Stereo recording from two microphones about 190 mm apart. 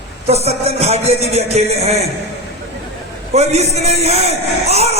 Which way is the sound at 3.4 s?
35° right (ahead or behind).